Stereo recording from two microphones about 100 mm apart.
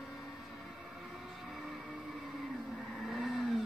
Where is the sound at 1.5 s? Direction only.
Centre (ahead or behind).